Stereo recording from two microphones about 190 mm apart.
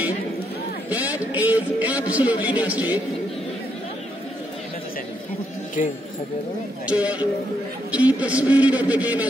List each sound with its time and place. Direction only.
0.8 s a man's voice: 10° right (ahead or behind)
5.8 s speech: 40° left (ahead or behind)
6.9 s a man's voice: 5° right (ahead or behind)